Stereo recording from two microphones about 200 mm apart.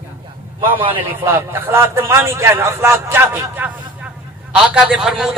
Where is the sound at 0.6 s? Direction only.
25° right (ahead or behind).